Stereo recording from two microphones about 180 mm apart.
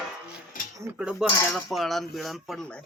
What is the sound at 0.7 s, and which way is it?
Speech, 15° right (ahead or behind).